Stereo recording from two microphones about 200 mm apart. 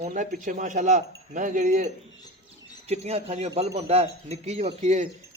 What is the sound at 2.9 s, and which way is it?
A man's voice, 30° right (ahead or behind).